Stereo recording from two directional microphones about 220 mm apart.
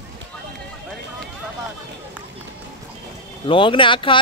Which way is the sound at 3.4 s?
25° left (ahead or behind).